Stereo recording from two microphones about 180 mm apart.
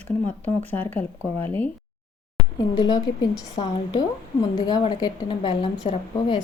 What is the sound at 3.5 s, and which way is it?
Speech, 35° left (ahead or behind).